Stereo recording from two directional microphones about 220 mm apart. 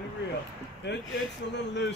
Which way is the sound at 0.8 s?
50° left (ahead or behind).